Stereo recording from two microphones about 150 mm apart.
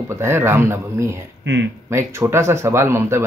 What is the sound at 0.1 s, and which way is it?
Speech, 15° right (ahead or behind).